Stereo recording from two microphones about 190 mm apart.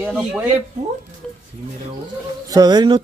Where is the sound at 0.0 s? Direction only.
10° right (ahead or behind).